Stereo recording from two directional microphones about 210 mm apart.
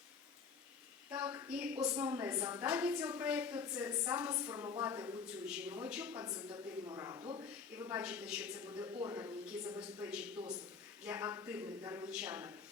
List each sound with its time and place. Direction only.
1.1 s a sound: 10° right (ahead or behind)
2.0 s a woman's voice: 10° right (ahead or behind)
6.2 s a woman's voice: 20° right (ahead or behind)
7.8 s a woman's voice: 10° right (ahead or behind)
8.8 s a woman's voice: 20° right (ahead or behind)
11.0 s a woman's voice: 10° right (ahead or behind)